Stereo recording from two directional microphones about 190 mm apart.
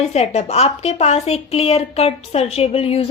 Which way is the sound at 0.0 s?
35° left (ahead or behind).